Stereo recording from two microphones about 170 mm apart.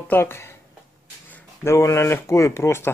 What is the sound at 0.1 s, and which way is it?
Speech, 15° left (ahead or behind).